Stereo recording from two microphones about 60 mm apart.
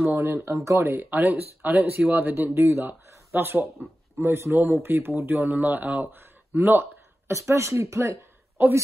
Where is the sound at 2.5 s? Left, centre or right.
Right.